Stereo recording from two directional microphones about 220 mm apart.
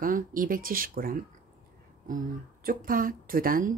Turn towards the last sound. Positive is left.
turn(degrees=-40)  # may be behind; listen again after turning